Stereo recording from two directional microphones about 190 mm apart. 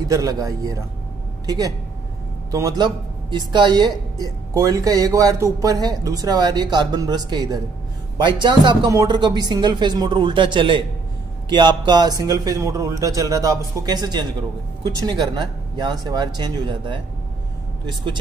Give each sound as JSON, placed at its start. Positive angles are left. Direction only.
{"t": 0.1, "sound": "a man's voice", "side_deg": -20}